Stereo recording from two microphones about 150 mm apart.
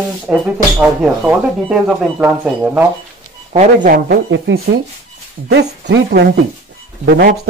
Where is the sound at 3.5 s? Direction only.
50° right (ahead or behind).